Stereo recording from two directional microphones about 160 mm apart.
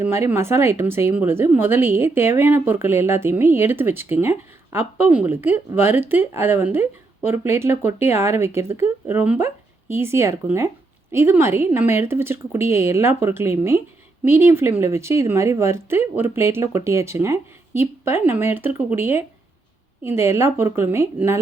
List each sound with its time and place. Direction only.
0.0 s speech: 15° right (ahead or behind)